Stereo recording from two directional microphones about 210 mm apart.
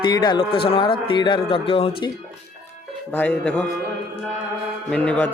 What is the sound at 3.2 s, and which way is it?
Speech, 5° left (ahead or behind).